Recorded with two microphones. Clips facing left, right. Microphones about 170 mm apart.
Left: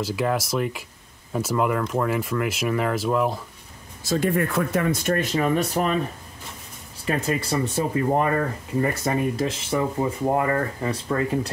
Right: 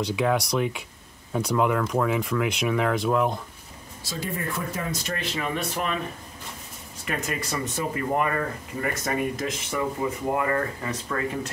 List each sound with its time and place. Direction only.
0.0 s speech: centre (ahead or behind)
4.0 s speech: 45° left (ahead or behind)
4.4 s speech: 70° left (ahead or behind); by 5.9 s 40° left (ahead or behind)
7.1 s speech: 30° left (ahead or behind)